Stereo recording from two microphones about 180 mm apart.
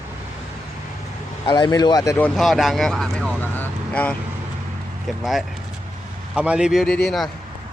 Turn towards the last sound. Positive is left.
turn(degrees=0)  # may be behind; listen again after turning